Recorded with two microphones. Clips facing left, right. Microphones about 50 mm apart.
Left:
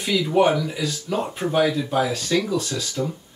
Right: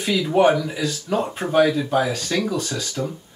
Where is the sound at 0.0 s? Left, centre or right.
Centre.